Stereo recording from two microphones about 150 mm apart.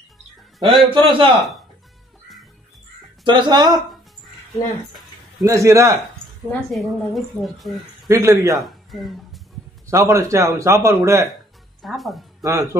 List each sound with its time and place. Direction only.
0.7 s a man's voice: 35° right (ahead or behind)
3.3 s speech: 30° right (ahead or behind)
5.4 s speech: 20° right (ahead or behind)
6.7 s speech: centre (ahead or behind)
8.1 s speech: 20° right (ahead or behind)
8.5 s music: centre (ahead or behind)
9.8 s speech: 20° right (ahead or behind)
11.8 s speech: centre (ahead or behind)